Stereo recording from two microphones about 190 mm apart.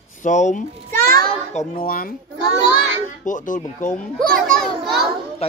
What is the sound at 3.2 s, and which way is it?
Speech, 40° left (ahead or behind).